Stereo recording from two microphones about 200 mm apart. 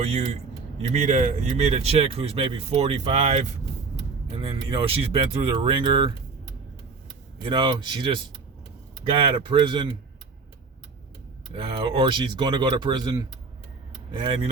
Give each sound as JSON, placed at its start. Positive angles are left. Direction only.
{"t": 0.9, "sound": "speech", "side_deg": -35}
{"t": 7.4, "sound": "speech", "side_deg": -20}
{"t": 11.5, "sound": "speech", "side_deg": -25}